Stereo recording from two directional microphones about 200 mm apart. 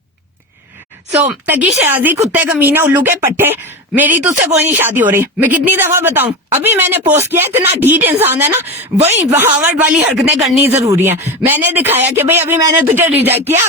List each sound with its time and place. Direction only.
1.2 s speech: 10° right (ahead or behind)
9.0 s speech: 35° right (ahead or behind)
9.4 s speech: 10° right (ahead or behind)